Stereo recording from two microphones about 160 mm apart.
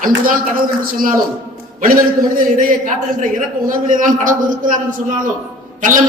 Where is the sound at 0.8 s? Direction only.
60° right (ahead or behind).